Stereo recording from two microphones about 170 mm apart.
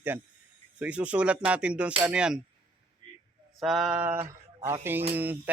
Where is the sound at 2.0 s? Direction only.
5° right (ahead or behind).